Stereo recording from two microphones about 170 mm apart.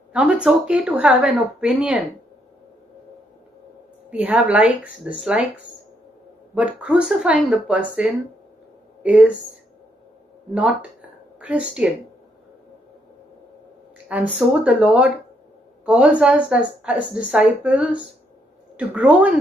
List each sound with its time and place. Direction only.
0.1 s speech: 5° right (ahead or behind)
4.2 s a woman's voice: 5° right (ahead or behind)
6.5 s a woman's voice: 5° right (ahead or behind)
14.0 s a woman's voice: 5° right (ahead or behind)